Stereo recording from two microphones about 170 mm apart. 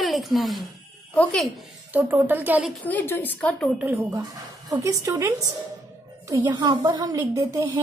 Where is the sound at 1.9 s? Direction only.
10° right (ahead or behind).